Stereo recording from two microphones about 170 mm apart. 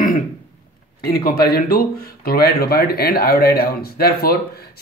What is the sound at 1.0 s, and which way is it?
Speech, 65° left (ahead or behind).